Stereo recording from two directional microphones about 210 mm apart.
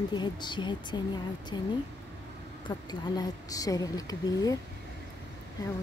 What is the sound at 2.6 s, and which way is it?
A woman's voice, 20° left (ahead or behind).